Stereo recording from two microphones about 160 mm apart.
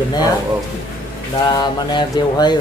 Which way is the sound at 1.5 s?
25° left (ahead or behind).